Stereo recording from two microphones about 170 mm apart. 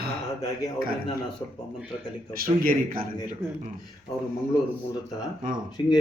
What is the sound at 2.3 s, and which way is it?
Speech, 60° right (ahead or behind).